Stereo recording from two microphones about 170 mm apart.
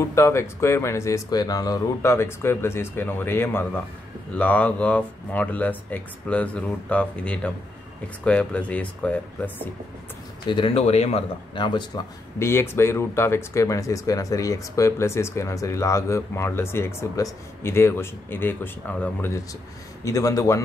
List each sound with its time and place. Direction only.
0.1 s a man's voice: 15° left (ahead or behind)
10.5 s a man's voice: 30° left (ahead or behind)